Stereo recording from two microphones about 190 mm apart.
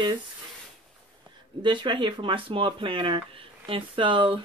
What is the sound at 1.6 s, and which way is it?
Speech, 25° right (ahead or behind).